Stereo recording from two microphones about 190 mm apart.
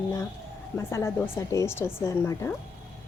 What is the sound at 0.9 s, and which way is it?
A woman's voice, 15° left (ahead or behind).